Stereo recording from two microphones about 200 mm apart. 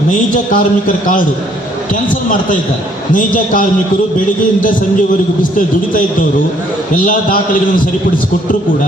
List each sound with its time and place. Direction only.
0.5 s a man's voice: 40° left (ahead or behind)
3.1 s a man's voice: 40° left (ahead or behind)
5.4 s a man's voice: 40° left (ahead or behind)